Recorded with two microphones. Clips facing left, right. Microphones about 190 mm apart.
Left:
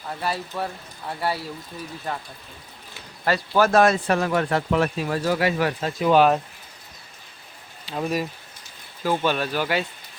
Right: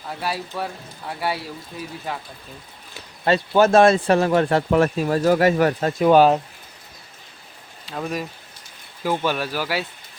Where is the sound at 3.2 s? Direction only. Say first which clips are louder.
Right 4 dB; 25° right (ahead or behind).